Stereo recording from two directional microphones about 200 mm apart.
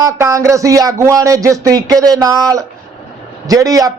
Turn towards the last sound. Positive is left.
turn(degrees=-15)  # may be behind; listen again after turning